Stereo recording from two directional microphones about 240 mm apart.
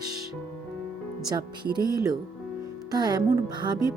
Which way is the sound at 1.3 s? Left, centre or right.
Centre.